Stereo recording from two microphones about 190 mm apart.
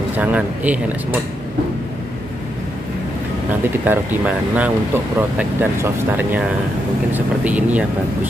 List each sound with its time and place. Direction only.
0.1 s speech: 10° right (ahead or behind)
3.8 s speech: 10° right (ahead or behind)